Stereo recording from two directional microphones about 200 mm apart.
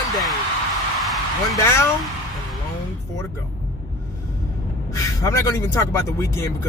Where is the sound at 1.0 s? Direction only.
Centre (ahead or behind).